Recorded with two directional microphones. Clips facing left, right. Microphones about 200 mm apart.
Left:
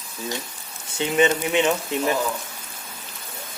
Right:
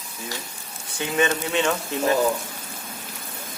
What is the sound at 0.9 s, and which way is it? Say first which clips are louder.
Speech: left 3 dB; 20° left (ahead or behind).